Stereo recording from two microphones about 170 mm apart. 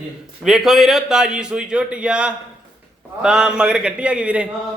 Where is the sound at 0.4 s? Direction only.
Centre (ahead or behind).